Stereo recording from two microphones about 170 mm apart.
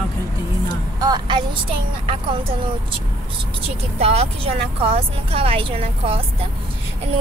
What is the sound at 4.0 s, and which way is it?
A woman's voice, 35° right (ahead or behind).